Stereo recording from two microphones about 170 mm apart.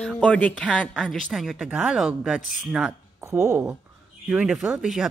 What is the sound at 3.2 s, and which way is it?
Speech, 15° right (ahead or behind).